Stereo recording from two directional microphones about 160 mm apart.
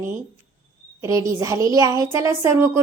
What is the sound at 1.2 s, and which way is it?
A woman's voice, 20° right (ahead or behind).